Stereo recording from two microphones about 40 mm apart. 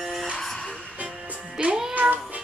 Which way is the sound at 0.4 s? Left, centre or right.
Centre.